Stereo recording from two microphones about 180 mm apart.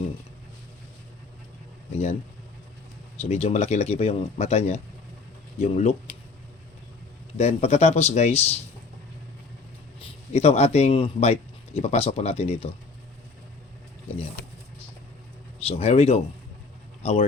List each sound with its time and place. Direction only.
3.2 s speech: 35° left (ahead or behind)
7.3 s speech: 35° left (ahead or behind)
10.3 s speech: 35° left (ahead or behind)
15.6 s speech: 35° left (ahead or behind)